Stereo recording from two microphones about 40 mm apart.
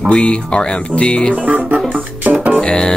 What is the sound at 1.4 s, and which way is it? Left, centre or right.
Music, right.